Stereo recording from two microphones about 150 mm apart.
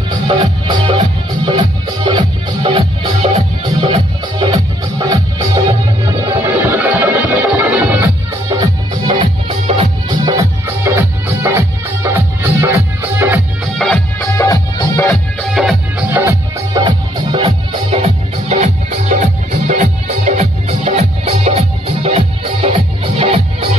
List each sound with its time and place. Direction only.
0.1 s music: 35° right (ahead or behind)
6.3 s music: 15° right (ahead or behind)
8.5 s music: 30° right (ahead or behind)
10.8 s music: 15° right (ahead or behind)
13.7 s music: 5° left (ahead or behind)
14.2 s music: 20° left (ahead or behind)
15.4 s music: centre (ahead or behind)
16.0 s music: 15° right (ahead or behind)
17.3 s music: 40° right (ahead or behind)